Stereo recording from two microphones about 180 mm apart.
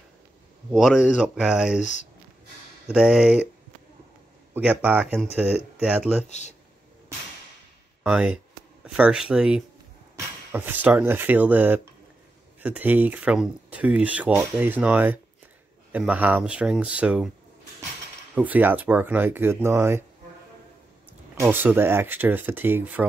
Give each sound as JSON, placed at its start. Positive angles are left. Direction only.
{"t": 0.7, "sound": "speech", "side_deg": 0}
{"t": 1.8, "sound": "speech", "side_deg": 40}
{"t": 2.9, "sound": "speech", "side_deg": -5}
{"t": 4.6, "sound": "speech", "side_deg": -5}
{"t": 6.2, "sound": "speech", "side_deg": 40}
{"t": 8.0, "sound": "speech", "side_deg": -5}
{"t": 18.3, "sound": "speech", "side_deg": -10}
{"t": 21.4, "sound": "speech", "side_deg": -10}